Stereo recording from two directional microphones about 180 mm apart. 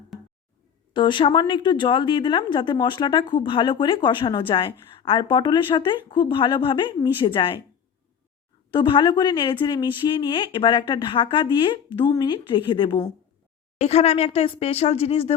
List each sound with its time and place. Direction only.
0.1 s a sound: centre (ahead or behind)
0.9 s a woman's voice: 25° left (ahead or behind)
8.7 s a woman's voice: 25° left (ahead or behind)
13.7 s speech: 35° left (ahead or behind)